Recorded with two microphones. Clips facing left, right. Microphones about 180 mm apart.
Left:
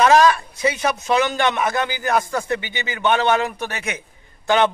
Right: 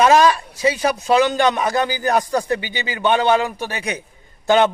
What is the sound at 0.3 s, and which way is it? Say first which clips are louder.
A man's voice: right 2 dB; 30° right (ahead or behind).